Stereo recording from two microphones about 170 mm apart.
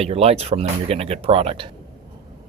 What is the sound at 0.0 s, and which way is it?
Speech, 35° right (ahead or behind).